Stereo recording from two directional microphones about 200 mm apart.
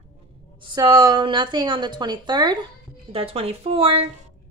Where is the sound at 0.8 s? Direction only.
20° right (ahead or behind).